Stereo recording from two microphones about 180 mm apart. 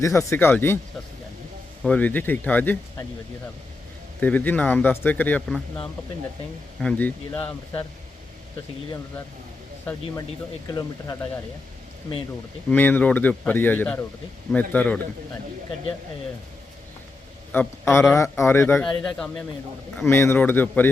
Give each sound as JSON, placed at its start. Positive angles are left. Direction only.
{"t": 0.0, "sound": "speech", "side_deg": 15}
{"t": 1.8, "sound": "speech", "side_deg": 5}
{"t": 4.2, "sound": "speech", "side_deg": 10}
{"t": 6.8, "sound": "speech", "side_deg": 10}
{"t": 10.8, "sound": "speech", "side_deg": 20}
{"t": 12.7, "sound": "speech", "side_deg": 10}
{"t": 17.5, "sound": "speech", "side_deg": 10}